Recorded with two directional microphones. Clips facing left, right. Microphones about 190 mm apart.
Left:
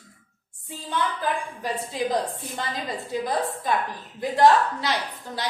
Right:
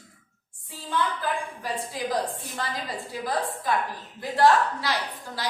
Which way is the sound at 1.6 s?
20° left (ahead or behind).